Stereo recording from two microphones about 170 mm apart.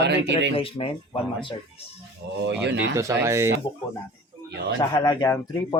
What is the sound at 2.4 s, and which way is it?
Speech, 85° right.